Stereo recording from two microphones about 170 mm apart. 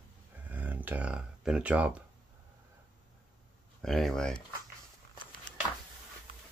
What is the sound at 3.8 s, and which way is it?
Speech, centre (ahead or behind).